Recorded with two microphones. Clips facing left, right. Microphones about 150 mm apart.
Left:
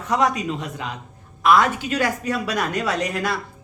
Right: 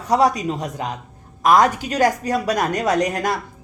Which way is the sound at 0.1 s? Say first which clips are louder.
Right 4 dB; 35° right (ahead or behind).